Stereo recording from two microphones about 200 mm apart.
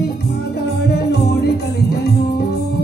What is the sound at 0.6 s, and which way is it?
Music, 55° left (ahead or behind).